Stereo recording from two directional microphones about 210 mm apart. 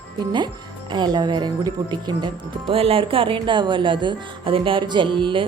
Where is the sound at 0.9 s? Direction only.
20° right (ahead or behind).